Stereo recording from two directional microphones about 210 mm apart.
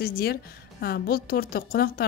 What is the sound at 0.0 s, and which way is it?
A woman's voice, 50° left (ahead or behind).